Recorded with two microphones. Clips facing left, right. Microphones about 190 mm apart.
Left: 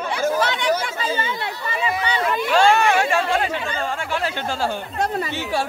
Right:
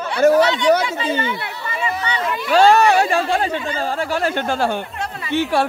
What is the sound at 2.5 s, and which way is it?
A woman's voice, 40° right (ahead or behind).